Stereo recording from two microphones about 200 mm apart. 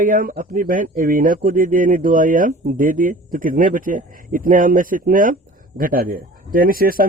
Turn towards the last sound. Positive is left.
turn(degrees=-45)  # may be behind; listen again after turning